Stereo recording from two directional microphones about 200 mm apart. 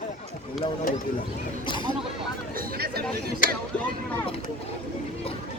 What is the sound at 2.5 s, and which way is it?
Chatter, 50° right (ahead or behind).